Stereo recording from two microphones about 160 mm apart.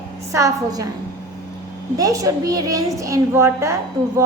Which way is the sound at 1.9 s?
20° right (ahead or behind).